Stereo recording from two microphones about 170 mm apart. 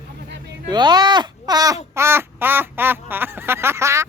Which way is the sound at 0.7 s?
25° right (ahead or behind).